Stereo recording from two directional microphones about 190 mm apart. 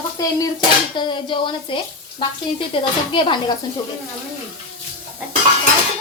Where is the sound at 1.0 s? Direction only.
25° left (ahead or behind).